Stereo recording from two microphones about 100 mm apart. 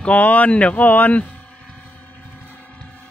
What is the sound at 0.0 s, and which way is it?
Speech, 15° left (ahead or behind).